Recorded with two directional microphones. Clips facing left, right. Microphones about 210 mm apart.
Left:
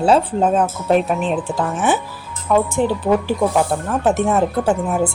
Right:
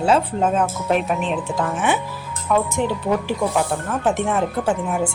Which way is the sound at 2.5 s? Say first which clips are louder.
Left 3 dB; 25° left (ahead or behind).